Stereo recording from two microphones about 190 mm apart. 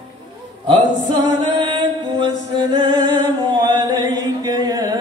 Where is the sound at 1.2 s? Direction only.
25° right (ahead or behind).